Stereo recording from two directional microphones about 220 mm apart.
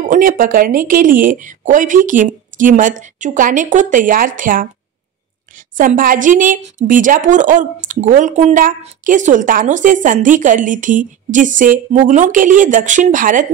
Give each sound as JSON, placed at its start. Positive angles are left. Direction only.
{"t": 0.1, "sound": "a woman's voice", "side_deg": -40}
{"t": 5.8, "sound": "a woman's voice", "side_deg": -40}